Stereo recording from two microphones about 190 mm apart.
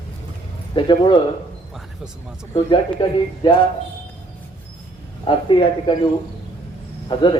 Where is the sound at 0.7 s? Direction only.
25° left (ahead or behind).